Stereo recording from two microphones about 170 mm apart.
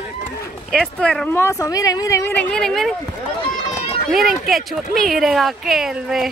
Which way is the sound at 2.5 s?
Centre (ahead or behind).